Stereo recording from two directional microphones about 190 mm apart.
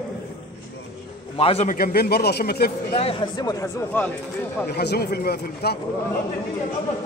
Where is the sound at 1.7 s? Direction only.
50° left (ahead or behind).